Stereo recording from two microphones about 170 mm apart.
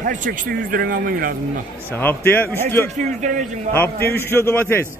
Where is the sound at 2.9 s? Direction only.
45° right (ahead or behind).